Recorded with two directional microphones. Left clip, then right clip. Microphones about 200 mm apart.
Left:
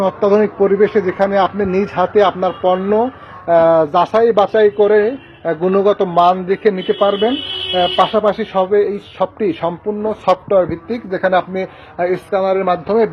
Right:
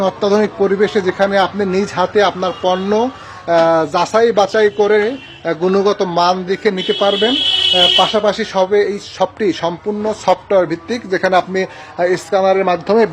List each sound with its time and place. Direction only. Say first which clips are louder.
0.0 s speech: left 1 dB; 10° right (ahead or behind); by 13.1 s 25° right (ahead or behind)